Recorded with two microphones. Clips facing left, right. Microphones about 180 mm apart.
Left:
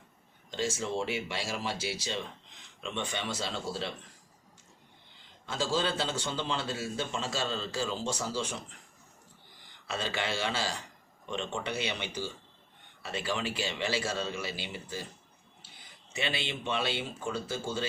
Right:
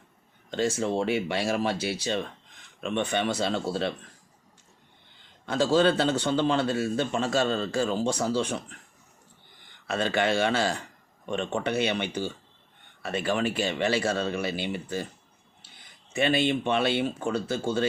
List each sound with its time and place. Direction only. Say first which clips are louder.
0.5 s speech: right 6 dB; 60° right (ahead or behind)
5.5 s speech: right 9 dB; 60° right (ahead or behind)
9.8 s speech: right 8 dB; 55° right (ahead or behind)
16.1 s speech: right 11 dB; 50° right (ahead or behind)